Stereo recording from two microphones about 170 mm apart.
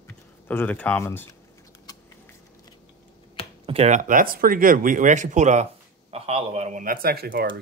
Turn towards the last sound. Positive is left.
turn(degrees=-65)  # may be behind; listen again after turning